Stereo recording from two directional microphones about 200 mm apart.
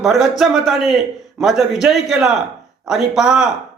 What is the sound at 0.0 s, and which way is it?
A man's voice, centre (ahead or behind).